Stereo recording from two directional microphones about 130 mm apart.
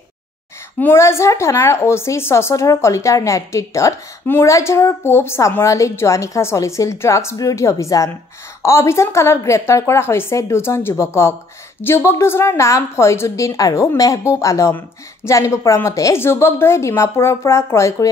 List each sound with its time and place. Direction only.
0.7 s a woman's voice: 20° left (ahead or behind)